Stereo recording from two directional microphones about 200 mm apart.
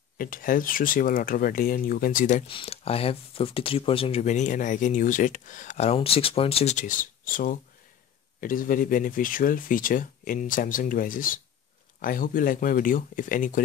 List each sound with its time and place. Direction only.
0.2 s speech: 45° left (ahead or behind)